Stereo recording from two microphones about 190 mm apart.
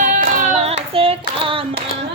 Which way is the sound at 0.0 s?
45° right (ahead or behind).